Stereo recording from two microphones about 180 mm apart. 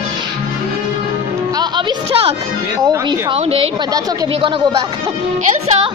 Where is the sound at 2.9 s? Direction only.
25° right (ahead or behind).